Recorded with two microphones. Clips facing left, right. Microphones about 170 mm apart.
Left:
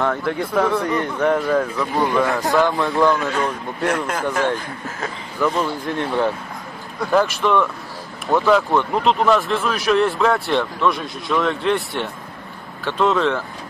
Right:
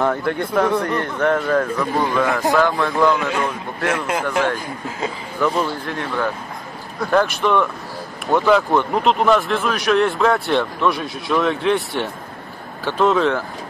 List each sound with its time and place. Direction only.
0.0 s speech: centre (ahead or behind); by 3.1 s 15° left (ahead or behind)
3.1 s a man's voice: 15° right (ahead or behind)
5.9 s speech: 25° left (ahead or behind)
7.1 s speech: centre (ahead or behind)